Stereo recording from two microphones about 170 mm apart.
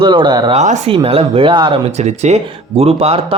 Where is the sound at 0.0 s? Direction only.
30° right (ahead or behind).